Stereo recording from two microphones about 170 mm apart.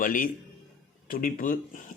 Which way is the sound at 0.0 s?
50° left (ahead or behind).